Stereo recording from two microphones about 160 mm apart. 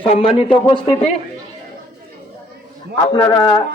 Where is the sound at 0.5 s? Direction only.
35° left (ahead or behind).